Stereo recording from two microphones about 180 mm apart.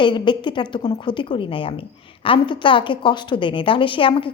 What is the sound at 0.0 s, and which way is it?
A woman's voice, 25° left (ahead or behind).